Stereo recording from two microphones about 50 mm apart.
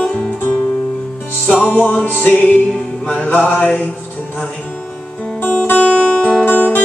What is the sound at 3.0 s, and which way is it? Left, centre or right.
Music, left.